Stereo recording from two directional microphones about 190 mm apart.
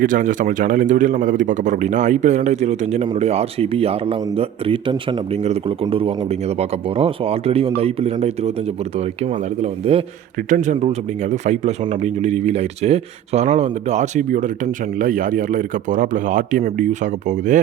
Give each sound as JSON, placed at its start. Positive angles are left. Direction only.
{"t": 0.0, "sound": "a man's voice", "side_deg": -45}